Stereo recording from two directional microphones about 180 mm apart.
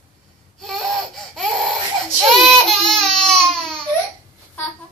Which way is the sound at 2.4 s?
Centre (ahead or behind).